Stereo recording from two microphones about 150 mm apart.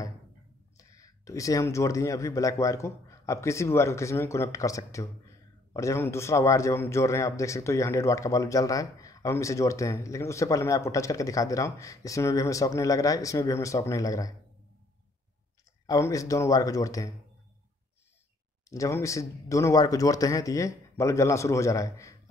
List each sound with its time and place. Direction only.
0.7 s a man's voice: 20° left (ahead or behind)
15.9 s a man's voice: 20° left (ahead or behind)
18.7 s a man's voice: 20° left (ahead or behind)